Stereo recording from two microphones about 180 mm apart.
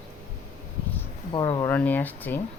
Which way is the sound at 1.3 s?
25° left (ahead or behind).